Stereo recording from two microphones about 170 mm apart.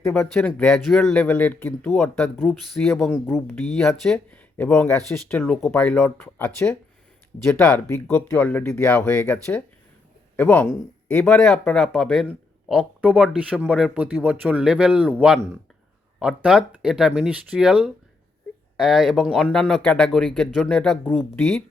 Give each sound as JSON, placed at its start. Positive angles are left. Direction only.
{"t": 0.1, "sound": "speech", "side_deg": 10}
{"t": 21.3, "sound": "speech", "side_deg": 5}